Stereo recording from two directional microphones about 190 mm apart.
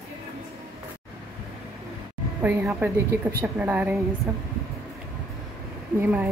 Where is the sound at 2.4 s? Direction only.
10° right (ahead or behind).